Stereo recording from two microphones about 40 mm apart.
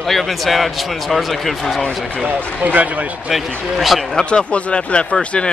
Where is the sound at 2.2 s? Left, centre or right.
Right.